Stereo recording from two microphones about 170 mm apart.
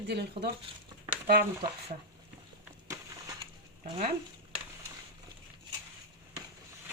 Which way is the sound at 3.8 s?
40° right (ahead or behind).